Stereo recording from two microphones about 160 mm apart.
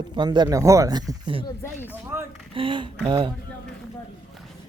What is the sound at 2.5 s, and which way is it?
Speech, 30° right (ahead or behind).